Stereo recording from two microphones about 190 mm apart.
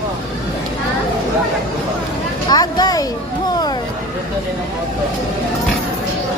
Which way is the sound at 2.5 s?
20° left (ahead or behind).